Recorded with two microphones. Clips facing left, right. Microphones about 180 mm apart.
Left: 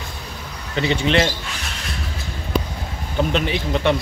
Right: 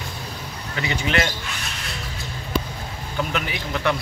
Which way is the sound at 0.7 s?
25° left (ahead or behind).